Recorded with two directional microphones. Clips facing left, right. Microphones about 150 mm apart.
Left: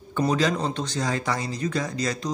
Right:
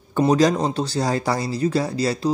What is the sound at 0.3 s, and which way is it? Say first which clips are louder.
Speech: right 7 dB; 40° right (ahead or behind).